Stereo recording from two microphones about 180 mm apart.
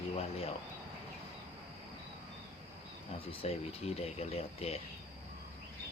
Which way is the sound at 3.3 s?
30° left (ahead or behind).